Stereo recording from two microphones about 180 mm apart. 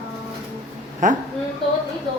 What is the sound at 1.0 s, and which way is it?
Speech, 45° right (ahead or behind).